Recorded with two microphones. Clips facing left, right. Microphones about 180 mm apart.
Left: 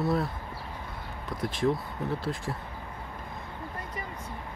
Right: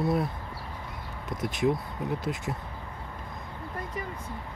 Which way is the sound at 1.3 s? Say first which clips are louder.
Right 1 dB; 20° right (ahead or behind).